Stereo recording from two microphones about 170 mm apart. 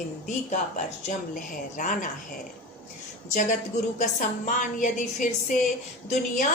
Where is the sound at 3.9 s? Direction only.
50° left (ahead or behind).